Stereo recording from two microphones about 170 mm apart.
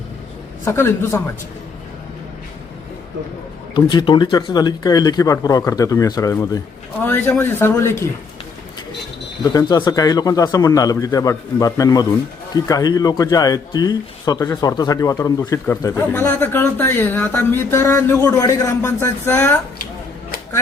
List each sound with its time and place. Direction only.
0.6 s a man's voice: 15° left (ahead or behind)
3.8 s a man's voice: 25° left (ahead or behind)
9.4 s a man's voice: 25° left (ahead or behind)